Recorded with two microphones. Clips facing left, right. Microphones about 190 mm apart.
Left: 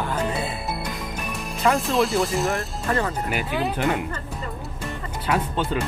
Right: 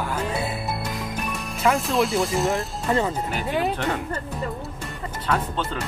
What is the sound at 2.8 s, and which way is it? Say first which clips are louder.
Speech: right 2 dB; 20° right (ahead or behind).